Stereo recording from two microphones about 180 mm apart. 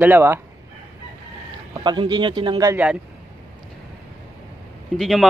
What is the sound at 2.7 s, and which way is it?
Speech, 5° right (ahead or behind).